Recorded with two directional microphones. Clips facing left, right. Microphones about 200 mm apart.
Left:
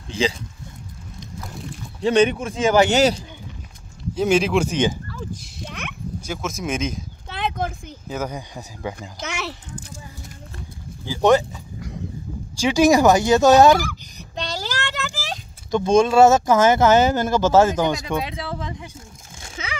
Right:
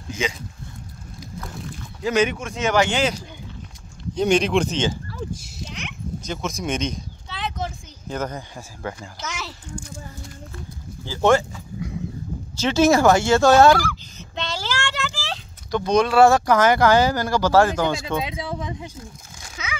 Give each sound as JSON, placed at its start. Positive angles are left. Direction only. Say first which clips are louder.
{"t": 0.1, "sound": "speech", "louder": "left 5 dB", "side_deg": 30}
{"t": 2.0, "sound": "speech", "louder": "left 4 dB", "side_deg": 30}
{"t": 4.1, "sound": "speech", "louder": "even", "side_deg": 5}
{"t": 5.7, "sound": "a sound", "louder": "left 2 dB", "side_deg": 55}
{"t": 6.2, "sound": "speech", "louder": "even", "side_deg": 5}
{"t": 7.2, "sound": "a sound", "louder": "left 4 dB", "side_deg": 55}
{"t": 8.1, "sound": "speech", "louder": "even", "side_deg": 10}
{"t": 9.2, "sound": "a child's voice", "louder": "left 4 dB", "side_deg": 65}
{"t": 11.1, "sound": "speech", "louder": "left 2 dB", "side_deg": 15}
{"t": 18.1, "sound": "speech", "louder": "even", "side_deg": -20}
{"t": 18.9, "sound": "crumpling", "louder": "right 2 dB", "side_deg": 25}